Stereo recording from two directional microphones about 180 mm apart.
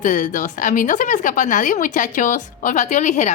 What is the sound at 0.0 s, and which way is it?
Speech, 45° left (ahead or behind).